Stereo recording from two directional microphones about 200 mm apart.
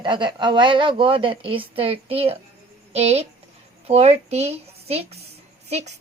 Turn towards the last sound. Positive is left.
turn(degrees=-35)  # may be behind; listen again after turning